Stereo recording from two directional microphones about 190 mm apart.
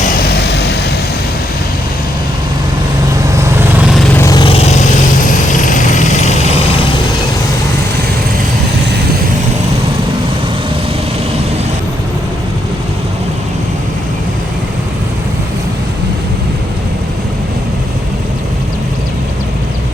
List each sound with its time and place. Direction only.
0.3 s vehicle: 60° left (ahead or behind)
4.2 s vehicle: 20° left (ahead or behind); by 6.3 s 40° left (ahead or behind)